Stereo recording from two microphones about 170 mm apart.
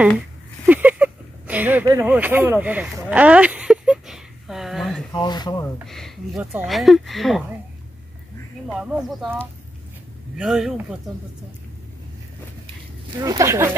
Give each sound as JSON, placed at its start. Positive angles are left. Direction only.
{"t": 0.7, "sound": "a sound", "side_deg": -10}
{"t": 1.9, "sound": "speech", "side_deg": -15}
{"t": 5.1, "sound": "speech", "side_deg": 25}
{"t": 5.9, "sound": "speech", "side_deg": 0}
{"t": 8.7, "sound": "speech", "side_deg": 0}
{"t": 10.3, "sound": "speech", "side_deg": -5}
{"t": 13.2, "sound": "speech", "side_deg": -20}